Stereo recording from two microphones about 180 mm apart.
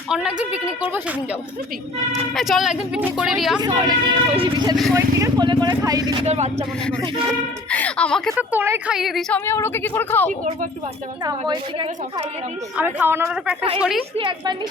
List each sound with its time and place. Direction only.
0.1 s speech: 5° right (ahead or behind)
2.3 s speech: centre (ahead or behind)
3.6 s speech: 20° right (ahead or behind)
6.2 s speech: 40° right (ahead or behind)
7.7 s speech: 5° left (ahead or behind)
8.4 s a woman's voice: 10° right (ahead or behind)
9.0 s speech: centre (ahead or behind)
9.5 s speech: 15° left (ahead or behind)
11.3 s speech: 25° right (ahead or behind)
12.7 s a woman's voice: 10° right (ahead or behind)
14.2 s speech: 30° right (ahead or behind)